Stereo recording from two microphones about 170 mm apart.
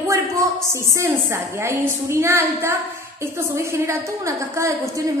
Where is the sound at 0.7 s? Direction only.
15° right (ahead or behind).